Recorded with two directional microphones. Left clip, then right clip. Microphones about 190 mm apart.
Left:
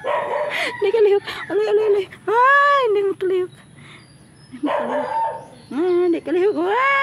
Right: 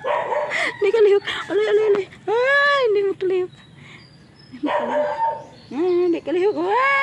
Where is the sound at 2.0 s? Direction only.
30° left (ahead or behind); by 3.5 s 10° left (ahead or behind).